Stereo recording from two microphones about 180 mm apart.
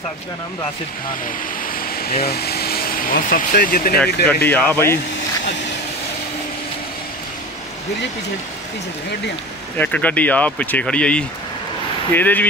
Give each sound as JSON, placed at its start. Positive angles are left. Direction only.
{"t": 1.2, "sound": "vehicle", "side_deg": 55}
{"t": 2.2, "sound": "speech", "side_deg": 60}
{"t": 4.3, "sound": "speech", "side_deg": 10}
{"t": 9.8, "sound": "speech", "side_deg": 5}